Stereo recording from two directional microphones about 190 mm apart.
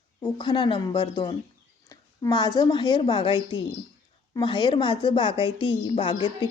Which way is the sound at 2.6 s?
20° left (ahead or behind).